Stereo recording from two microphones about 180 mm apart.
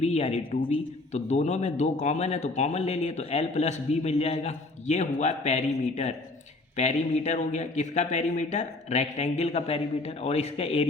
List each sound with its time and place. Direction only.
0.0 s a man's voice: 35° left (ahead or behind)